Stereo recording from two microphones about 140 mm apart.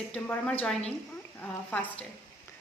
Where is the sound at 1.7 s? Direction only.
10° left (ahead or behind).